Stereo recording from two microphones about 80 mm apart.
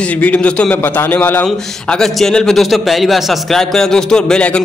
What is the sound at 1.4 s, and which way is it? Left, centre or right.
A man's voice, centre.